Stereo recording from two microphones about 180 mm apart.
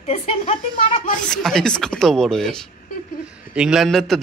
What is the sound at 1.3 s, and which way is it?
A man's voice, centre (ahead or behind).